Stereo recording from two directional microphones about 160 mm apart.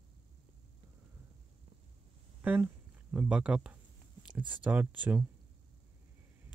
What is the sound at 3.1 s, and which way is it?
Speech, 5° right (ahead or behind).